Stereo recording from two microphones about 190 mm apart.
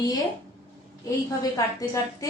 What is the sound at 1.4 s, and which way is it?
Speech, 20° left (ahead or behind).